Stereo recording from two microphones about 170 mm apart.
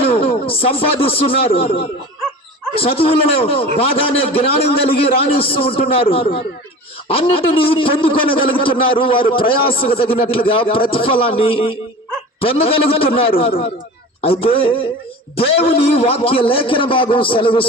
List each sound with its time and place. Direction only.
0.0 s a man's voice: 35° left (ahead or behind)